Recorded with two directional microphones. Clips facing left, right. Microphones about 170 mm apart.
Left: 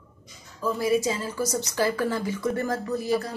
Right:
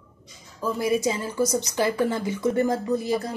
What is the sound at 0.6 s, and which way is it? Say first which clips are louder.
Speech: even; 20° right (ahead or behind).